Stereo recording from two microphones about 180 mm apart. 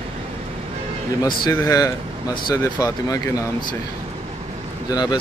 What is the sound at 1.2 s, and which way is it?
Speech, 20° left (ahead or behind).